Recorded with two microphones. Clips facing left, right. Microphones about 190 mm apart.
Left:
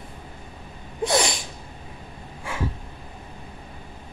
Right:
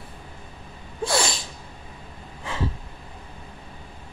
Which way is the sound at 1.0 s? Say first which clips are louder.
Left 2 dB; 20° left (ahead or behind).